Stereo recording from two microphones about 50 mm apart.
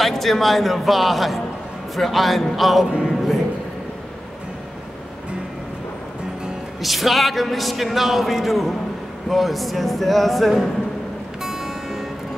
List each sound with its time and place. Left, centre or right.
0.0 s speech: centre
2.9 s music: centre
6.8 s speech: centre
11.4 s music: centre